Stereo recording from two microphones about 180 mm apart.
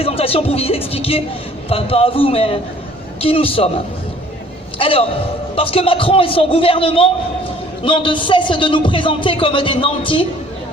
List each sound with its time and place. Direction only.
0.0 s a man's voice: 30° left (ahead or behind)
4.8 s a man's voice: 30° left (ahead or behind)